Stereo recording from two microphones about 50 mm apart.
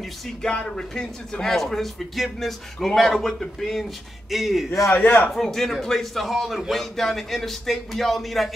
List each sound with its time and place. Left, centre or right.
0.4 s speech: centre
4.9 s a man's voice: left
5.3 s speech: centre